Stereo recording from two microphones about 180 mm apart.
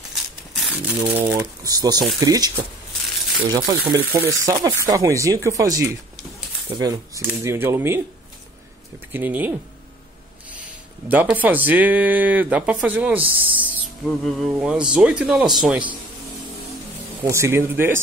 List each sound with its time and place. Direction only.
0.1 s a sound: centre (ahead or behind)
1.3 s speech: 15° right (ahead or behind)
9.1 s speech: 10° right (ahead or behind)
11.1 s speech: 10° right (ahead or behind)
17.2 s speech: 15° right (ahead or behind)